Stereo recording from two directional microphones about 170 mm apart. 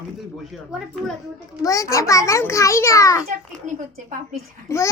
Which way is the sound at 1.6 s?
20° left (ahead or behind).